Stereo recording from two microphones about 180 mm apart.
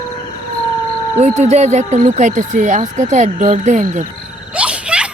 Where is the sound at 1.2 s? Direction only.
40° right (ahead or behind).